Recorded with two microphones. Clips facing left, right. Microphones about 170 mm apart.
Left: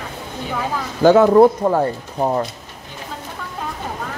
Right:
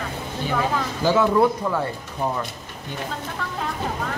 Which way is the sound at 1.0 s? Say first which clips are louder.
Left 8 dB; 55° left (ahead or behind).